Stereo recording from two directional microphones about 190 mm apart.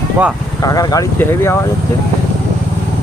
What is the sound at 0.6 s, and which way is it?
Speech, 20° left (ahead or behind).